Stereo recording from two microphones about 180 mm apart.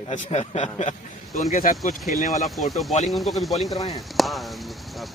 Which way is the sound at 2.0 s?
Centre (ahead or behind).